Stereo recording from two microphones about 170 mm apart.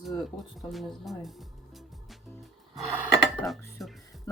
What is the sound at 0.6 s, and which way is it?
Speech, centre (ahead or behind).